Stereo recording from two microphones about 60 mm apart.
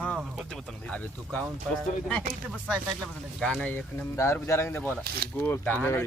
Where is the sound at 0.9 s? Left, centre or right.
Left.